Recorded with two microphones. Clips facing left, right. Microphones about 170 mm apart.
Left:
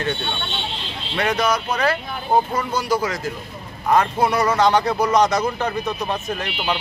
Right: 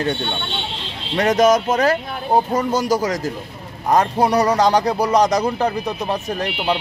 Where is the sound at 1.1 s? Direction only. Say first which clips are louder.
Right 6 dB; 40° right (ahead or behind).